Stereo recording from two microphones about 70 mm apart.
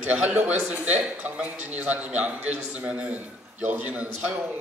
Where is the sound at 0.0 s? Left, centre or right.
Centre.